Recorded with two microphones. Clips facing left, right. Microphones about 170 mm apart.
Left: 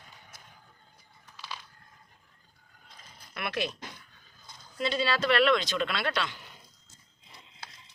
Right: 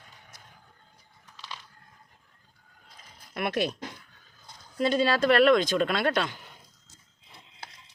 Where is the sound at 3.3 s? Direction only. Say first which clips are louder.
Right 5 dB; 40° right (ahead or behind).